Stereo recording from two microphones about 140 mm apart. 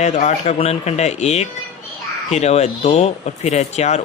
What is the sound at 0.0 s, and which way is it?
Speech, 55° left (ahead or behind).